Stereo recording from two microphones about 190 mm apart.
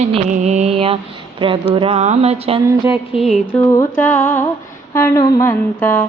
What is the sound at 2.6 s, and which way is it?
Speech, 15° right (ahead or behind).